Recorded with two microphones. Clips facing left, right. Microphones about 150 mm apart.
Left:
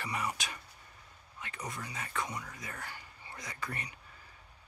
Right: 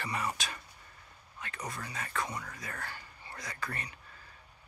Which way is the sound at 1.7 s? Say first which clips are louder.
Right 1 dB; 15° left (ahead or behind).